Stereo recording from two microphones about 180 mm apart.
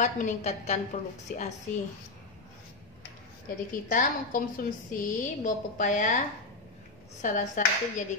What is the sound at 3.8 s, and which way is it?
A woman's voice, 50° left (ahead or behind).